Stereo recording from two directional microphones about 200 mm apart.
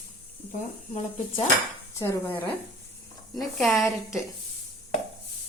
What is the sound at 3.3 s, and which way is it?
Speech, centre (ahead or behind).